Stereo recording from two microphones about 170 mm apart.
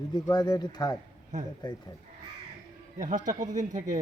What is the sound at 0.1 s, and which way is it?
Speech, 25° left (ahead or behind).